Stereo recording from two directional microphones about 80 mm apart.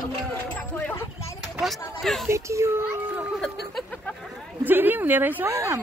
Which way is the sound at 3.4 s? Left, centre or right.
Centre.